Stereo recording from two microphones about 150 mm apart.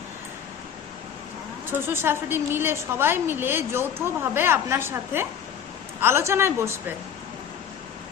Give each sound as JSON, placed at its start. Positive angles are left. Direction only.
{"t": 1.7, "sound": "a woman's voice", "side_deg": -15}